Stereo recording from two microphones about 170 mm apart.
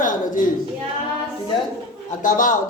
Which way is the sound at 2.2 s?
50° left (ahead or behind).